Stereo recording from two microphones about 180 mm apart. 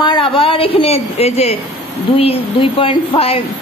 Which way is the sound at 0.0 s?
25° left (ahead or behind).